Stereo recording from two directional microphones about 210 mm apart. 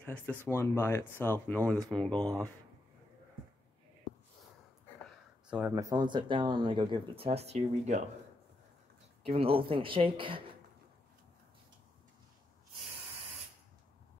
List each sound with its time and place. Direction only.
0.0 s speech: 5° left (ahead or behind)
5.5 s speech: 10° right (ahead or behind); by 8.0 s 30° right (ahead or behind)
9.2 s speech: 25° right (ahead or behind)